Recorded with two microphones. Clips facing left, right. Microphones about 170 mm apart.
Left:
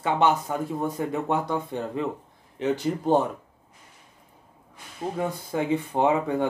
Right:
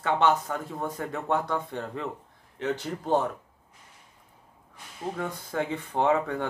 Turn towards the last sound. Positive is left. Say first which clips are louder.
# left 2 dB
turn(degrees=15)  # may be behind; listen again after turning